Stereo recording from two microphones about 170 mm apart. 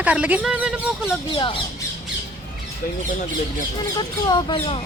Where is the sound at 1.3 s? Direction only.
30° left (ahead or behind).